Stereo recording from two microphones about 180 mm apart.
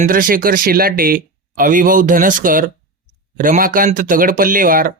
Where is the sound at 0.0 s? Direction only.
50° right (ahead or behind).